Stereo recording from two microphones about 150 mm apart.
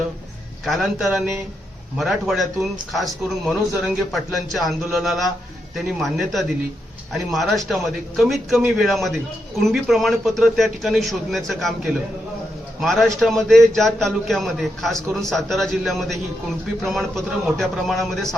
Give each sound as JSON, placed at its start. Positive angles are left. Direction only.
{"t": 0.6, "sound": "a man's voice", "side_deg": 0}
{"t": 12.8, "sound": "a man's voice", "side_deg": 0}